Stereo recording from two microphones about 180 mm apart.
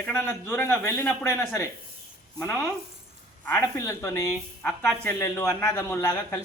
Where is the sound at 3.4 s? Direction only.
15° left (ahead or behind).